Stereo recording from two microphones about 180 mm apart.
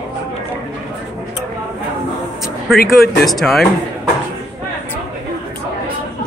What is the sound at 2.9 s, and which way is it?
Speech, centre (ahead or behind).